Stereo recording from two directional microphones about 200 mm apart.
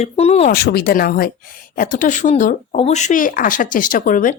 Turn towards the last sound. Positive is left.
turn(degrees=40)  # may be behind; listen again after turning